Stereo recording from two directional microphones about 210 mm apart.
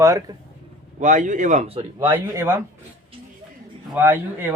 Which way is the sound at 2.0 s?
10° right (ahead or behind).